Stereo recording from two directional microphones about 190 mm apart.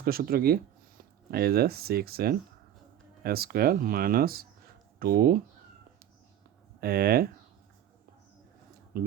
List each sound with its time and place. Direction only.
0.0 s speech: 50° right (ahead or behind)
6.7 s speech: 55° right (ahead or behind)
8.9 s speech: 50° right (ahead or behind)